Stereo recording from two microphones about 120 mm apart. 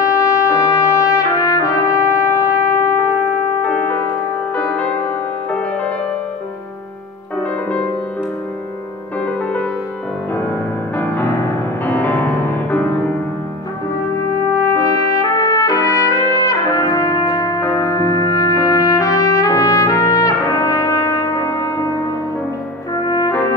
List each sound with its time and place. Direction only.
0.0 s trumpet: 30° left (ahead or behind)
3.6 s music: 15° left (ahead or behind)
9.2 s music: 10° left (ahead or behind)
11.0 s music: 15° left (ahead or behind)
14.5 s trumpet: 30° left (ahead or behind)
23.0 s french horn: 30° left (ahead or behind)